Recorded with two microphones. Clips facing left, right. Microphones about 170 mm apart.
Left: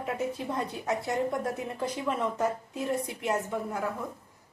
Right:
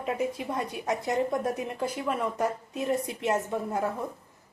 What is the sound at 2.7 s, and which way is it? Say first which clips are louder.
A woman's voice: right 2 dB; 20° right (ahead or behind).